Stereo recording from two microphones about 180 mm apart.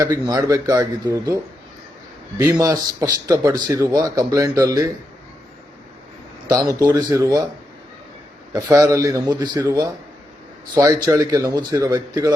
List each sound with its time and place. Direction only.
0.0 s speech: 20° right (ahead or behind)
2.4 s speech: 20° right (ahead or behind)
6.5 s speech: 20° right (ahead or behind)
8.5 s speech: 20° right (ahead or behind)